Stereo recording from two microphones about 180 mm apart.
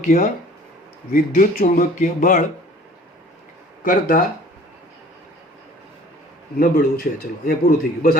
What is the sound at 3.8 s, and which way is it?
Speech, 50° left (ahead or behind).